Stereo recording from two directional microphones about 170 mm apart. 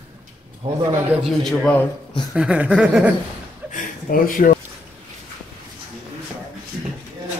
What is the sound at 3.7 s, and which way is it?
Speech, 55° left (ahead or behind).